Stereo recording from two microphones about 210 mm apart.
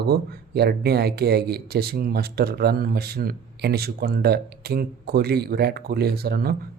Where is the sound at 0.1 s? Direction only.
50° right (ahead or behind).